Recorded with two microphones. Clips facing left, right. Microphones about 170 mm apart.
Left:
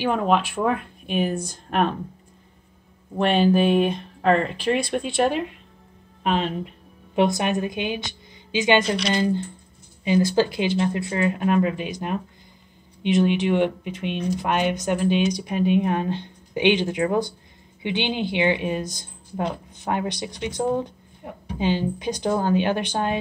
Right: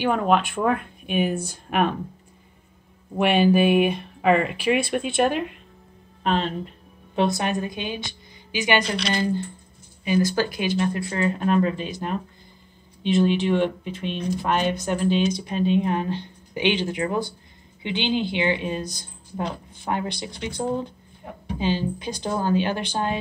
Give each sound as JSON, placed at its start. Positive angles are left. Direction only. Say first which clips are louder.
{"t": 0.0, "sound": "speech", "louder": "even", "side_deg": 0}
{"t": 3.2, "sound": "speech", "louder": "even", "side_deg": -10}
{"t": 6.2, "sound": "speech", "louder": "even", "side_deg": 10}